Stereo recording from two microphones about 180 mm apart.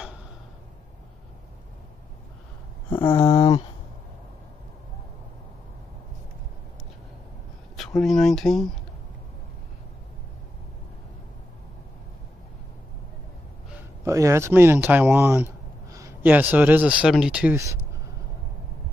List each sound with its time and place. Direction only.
2.9 s a sound: 25° left (ahead or behind)
8.0 s speech: centre (ahead or behind)
13.7 s speech: 15° right (ahead or behind)